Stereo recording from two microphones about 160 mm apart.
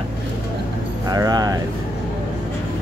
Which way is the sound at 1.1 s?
25° right (ahead or behind).